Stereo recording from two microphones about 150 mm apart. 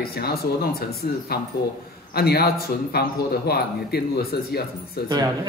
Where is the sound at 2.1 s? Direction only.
90° left.